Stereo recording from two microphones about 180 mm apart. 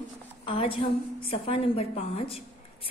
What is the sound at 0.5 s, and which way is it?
A woman's voice, 30° left (ahead or behind).